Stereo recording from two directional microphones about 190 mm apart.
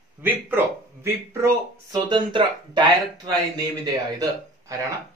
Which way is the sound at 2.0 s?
25° right (ahead or behind).